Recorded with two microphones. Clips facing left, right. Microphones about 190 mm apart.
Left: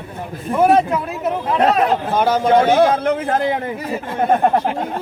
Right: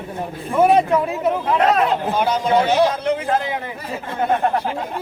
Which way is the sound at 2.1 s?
50° left (ahead or behind).